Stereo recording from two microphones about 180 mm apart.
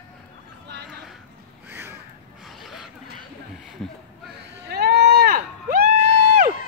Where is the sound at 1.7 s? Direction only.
15° right (ahead or behind).